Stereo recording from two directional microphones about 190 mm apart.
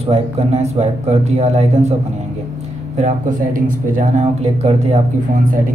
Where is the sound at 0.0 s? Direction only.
30° right (ahead or behind).